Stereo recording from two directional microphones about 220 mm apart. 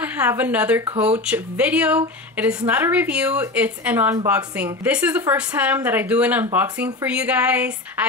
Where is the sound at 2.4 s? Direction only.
5° right (ahead or behind).